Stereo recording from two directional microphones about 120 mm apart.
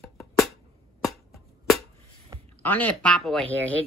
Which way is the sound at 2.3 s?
30° right (ahead or behind).